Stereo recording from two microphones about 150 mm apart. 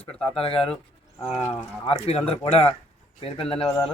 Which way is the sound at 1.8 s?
40° left (ahead or behind).